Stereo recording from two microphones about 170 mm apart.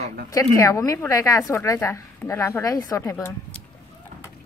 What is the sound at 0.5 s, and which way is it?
A woman's voice, 20° left (ahead or behind).